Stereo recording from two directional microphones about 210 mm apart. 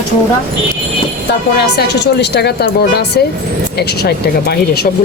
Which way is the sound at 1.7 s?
50° left (ahead or behind).